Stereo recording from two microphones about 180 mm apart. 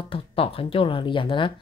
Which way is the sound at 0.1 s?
30° left (ahead or behind).